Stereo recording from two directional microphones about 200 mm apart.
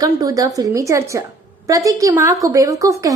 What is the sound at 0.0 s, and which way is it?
A woman's voice, 20° right (ahead or behind).